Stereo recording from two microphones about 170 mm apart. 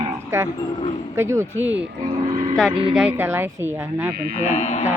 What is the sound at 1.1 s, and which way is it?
Speech, 15° right (ahead or behind).